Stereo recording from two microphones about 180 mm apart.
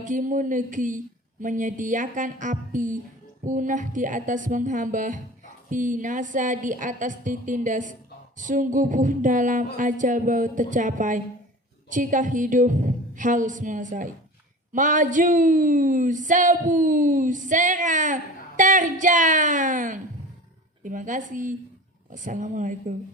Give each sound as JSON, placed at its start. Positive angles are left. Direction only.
{"t": 0.0, "sound": "speech", "side_deg": -45}